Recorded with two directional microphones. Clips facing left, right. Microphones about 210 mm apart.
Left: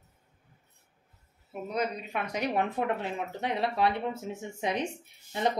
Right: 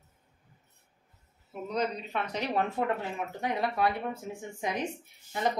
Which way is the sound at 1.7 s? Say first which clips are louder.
Even; 10° left (ahead or behind).